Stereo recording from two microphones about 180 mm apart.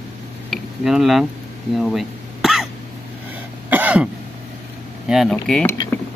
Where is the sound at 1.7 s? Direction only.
Centre (ahead or behind).